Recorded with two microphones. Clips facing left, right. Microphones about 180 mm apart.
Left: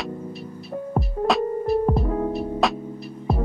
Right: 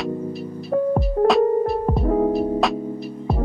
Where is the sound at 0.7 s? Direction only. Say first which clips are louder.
Right 11 dB; 80° right.